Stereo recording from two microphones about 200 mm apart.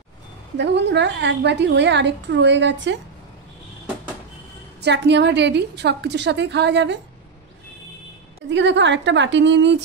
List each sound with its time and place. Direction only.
0.6 s a woman's voice: 60° right (ahead or behind)
4.8 s a woman's voice: 60° right (ahead or behind)
8.5 s a woman's voice: 65° right (ahead or behind)